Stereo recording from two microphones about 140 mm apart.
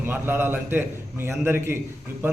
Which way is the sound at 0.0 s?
15° right (ahead or behind).